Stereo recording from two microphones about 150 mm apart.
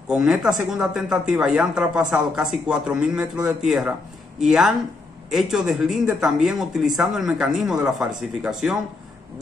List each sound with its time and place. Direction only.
0.1 s speech: 5° right (ahead or behind)